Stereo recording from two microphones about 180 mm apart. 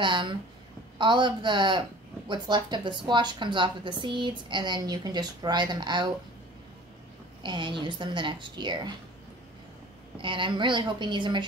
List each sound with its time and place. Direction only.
0.0 s speech: 25° right (ahead or behind)
7.4 s speech: 25° right (ahead or behind)
10.1 s speech: 30° right (ahead or behind)